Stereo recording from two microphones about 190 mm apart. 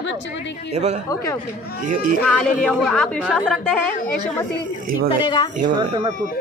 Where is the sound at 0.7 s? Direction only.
35° right (ahead or behind).